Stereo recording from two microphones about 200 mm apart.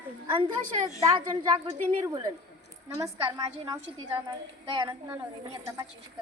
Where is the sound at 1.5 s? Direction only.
20° right (ahead or behind).